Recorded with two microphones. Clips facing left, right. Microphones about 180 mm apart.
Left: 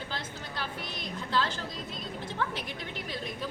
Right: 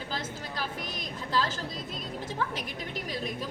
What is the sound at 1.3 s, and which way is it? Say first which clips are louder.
Speech: right 1 dB; 5° right (ahead or behind).